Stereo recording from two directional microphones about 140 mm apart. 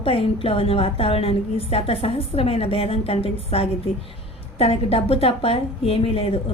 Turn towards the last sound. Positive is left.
turn(degrees=45)  # may be behind; listen again after turning